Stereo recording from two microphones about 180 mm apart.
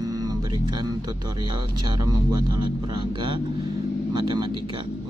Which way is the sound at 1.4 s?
25° right (ahead or behind).